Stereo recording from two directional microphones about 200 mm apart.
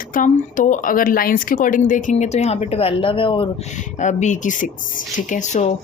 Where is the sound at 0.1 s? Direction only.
40° left (ahead or behind).